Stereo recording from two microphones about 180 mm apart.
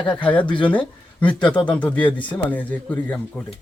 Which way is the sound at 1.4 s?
25° left (ahead or behind).